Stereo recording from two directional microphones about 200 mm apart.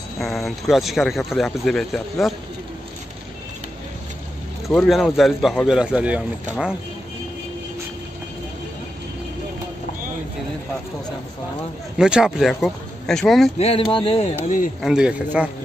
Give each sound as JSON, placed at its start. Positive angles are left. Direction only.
{"t": 0.2, "sound": "speech", "side_deg": 0}
{"t": 4.6, "sound": "speech", "side_deg": 0}
{"t": 12.0, "sound": "speech", "side_deg": -5}
{"t": 13.6, "sound": "speech", "side_deg": 30}
{"t": 14.8, "sound": "speech", "side_deg": -5}